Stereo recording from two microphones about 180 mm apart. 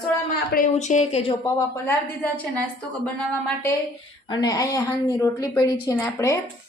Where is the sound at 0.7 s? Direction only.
40° left (ahead or behind).